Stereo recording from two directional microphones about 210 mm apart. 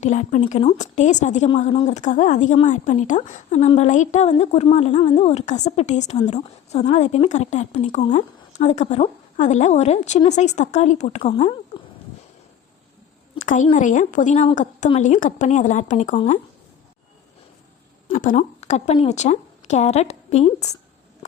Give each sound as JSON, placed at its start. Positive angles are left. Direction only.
{"t": 0.0, "sound": "a woman's voice", "side_deg": 35}
{"t": 13.3, "sound": "a sound", "side_deg": 35}
{"t": 13.7, "sound": "a woman's voice", "side_deg": 35}
{"t": 18.1, "sound": "a woman's voice", "side_deg": 40}